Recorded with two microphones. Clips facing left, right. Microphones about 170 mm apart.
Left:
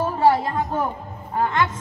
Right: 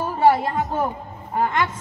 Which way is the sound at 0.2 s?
15° right (ahead or behind).